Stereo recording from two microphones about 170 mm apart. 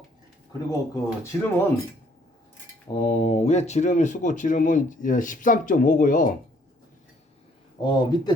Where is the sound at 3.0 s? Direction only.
35° left (ahead or behind); by 6.3 s 50° left (ahead or behind).